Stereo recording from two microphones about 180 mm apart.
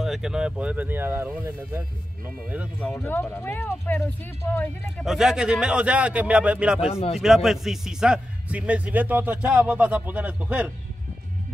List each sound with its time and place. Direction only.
0.0 s a man's voice: centre (ahead or behind)
2.8 s speech: 10° left (ahead or behind)
5.0 s a man's voice: 5° right (ahead or behind)
6.9 s speech: 35° left (ahead or behind)
7.2 s a man's voice: centre (ahead or behind)